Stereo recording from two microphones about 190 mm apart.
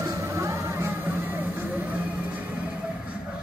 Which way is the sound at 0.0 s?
15° right (ahead or behind).